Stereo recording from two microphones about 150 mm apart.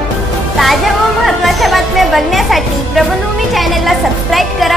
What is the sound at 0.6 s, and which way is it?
A woman's voice, centre (ahead or behind).